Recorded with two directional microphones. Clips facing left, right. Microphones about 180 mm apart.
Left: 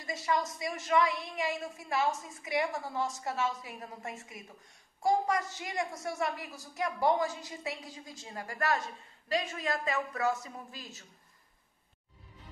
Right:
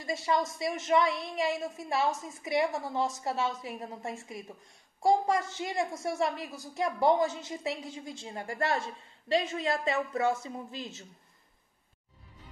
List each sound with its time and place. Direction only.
0.0 s a woman's voice: 25° right (ahead or behind)